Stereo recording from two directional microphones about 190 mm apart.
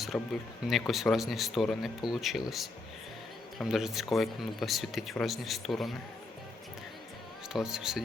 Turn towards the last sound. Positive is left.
turn(degrees=-5)  # may be behind; listen again after turning